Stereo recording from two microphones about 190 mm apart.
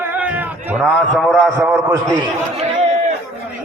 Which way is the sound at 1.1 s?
5° left (ahead or behind).